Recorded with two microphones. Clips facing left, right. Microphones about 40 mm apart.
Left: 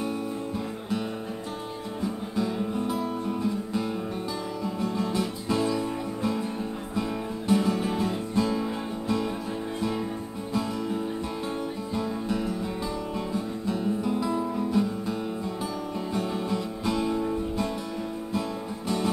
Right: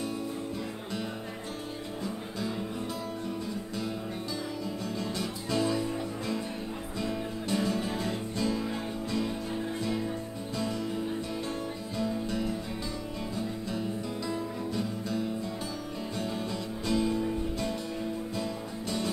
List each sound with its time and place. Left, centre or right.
2.3 s music: centre
7.0 s music: centre
13.3 s music: centre
16.2 s music: centre